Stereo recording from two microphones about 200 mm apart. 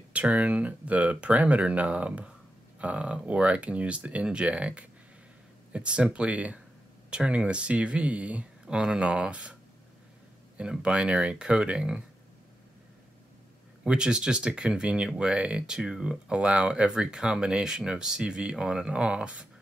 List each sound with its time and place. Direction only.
0.1 s speech: 5° right (ahead or behind)
10.6 s speech: 5° right (ahead or behind)
13.8 s speech: 5° right (ahead or behind)